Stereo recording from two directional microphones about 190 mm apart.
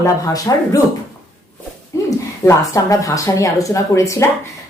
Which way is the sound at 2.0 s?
15° left (ahead or behind).